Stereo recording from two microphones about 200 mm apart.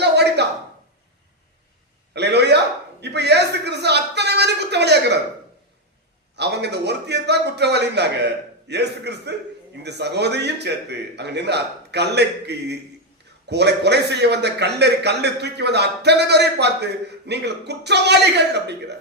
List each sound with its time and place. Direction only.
0.0 s a sound: 55° right (ahead or behind)
2.1 s a man's voice: 55° right (ahead or behind)
6.3 s a man's voice: 55° right (ahead or behind)